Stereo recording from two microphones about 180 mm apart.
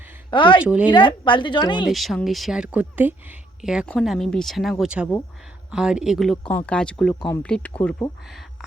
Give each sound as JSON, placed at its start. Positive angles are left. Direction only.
{"t": 0.3, "sound": "a woman's voice", "side_deg": 25}
{"t": 0.6, "sound": "speech", "side_deg": -5}
{"t": 0.9, "sound": "a woman's voice", "side_deg": 25}
{"t": 1.9, "sound": "speech", "side_deg": 0}